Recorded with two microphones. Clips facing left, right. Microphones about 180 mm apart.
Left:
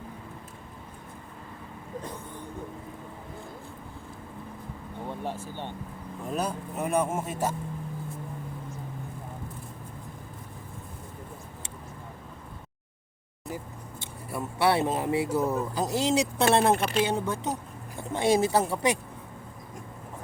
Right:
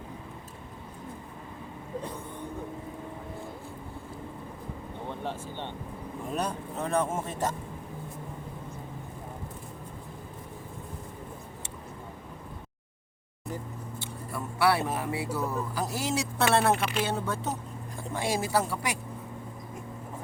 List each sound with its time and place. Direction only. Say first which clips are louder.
5.0 s vehicle: left 1 dB; 10° left (ahead or behind)
6.3 s speech: left 2 dB; 5° left (ahead or behind)
14.0 s speech: left 3 dB; 20° left (ahead or behind)
16.7 s speech: left 3 dB; 40° left (ahead or behind)
17.0 s speech: left 3 dB; 15° left (ahead or behind)